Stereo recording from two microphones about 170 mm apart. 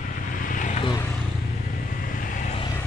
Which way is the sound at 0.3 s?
50° left (ahead or behind).